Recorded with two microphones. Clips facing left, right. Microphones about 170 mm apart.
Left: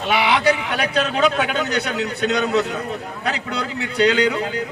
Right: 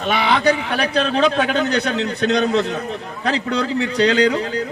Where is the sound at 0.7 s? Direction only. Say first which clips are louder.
Right 2 dB; 30° right (ahead or behind).